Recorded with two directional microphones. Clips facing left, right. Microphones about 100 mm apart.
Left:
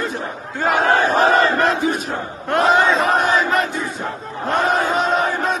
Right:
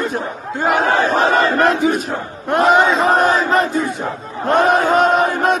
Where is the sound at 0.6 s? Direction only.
15° right (ahead or behind).